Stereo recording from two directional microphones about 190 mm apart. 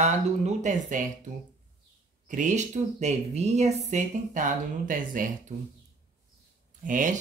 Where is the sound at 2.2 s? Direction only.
40° right (ahead or behind).